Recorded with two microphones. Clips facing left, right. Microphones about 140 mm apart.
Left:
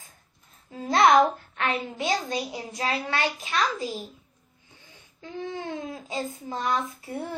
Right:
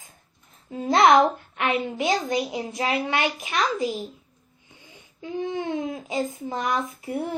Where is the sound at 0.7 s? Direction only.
20° right (ahead or behind).